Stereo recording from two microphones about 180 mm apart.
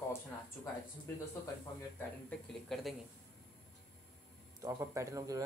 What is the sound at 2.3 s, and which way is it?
Speech, centre (ahead or behind).